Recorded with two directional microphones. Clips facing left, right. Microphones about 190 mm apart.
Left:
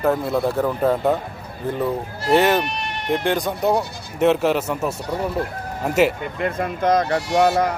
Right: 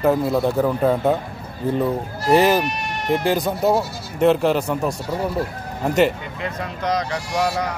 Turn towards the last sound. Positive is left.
turn(degrees=50)  # may be behind; listen again after turning